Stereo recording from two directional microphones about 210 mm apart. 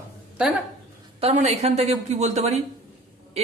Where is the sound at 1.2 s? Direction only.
30° right (ahead or behind).